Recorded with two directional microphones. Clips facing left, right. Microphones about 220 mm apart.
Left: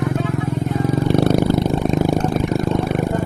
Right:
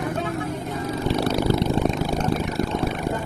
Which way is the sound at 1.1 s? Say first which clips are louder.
Left 5 dB; 55° left (ahead or behind).